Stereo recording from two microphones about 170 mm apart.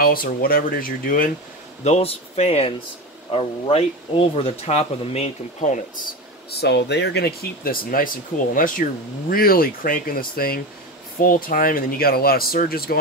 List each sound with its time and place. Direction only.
0.0 s speech: 60° left (ahead or behind)
1.9 s speech: 35° left (ahead or behind)
6.5 s speech: 85° left; by 13.0 s 60° left (ahead or behind)